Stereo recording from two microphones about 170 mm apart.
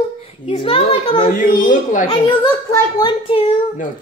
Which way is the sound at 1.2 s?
55° left (ahead or behind).